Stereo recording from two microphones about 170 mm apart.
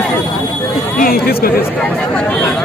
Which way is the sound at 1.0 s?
60° left (ahead or behind).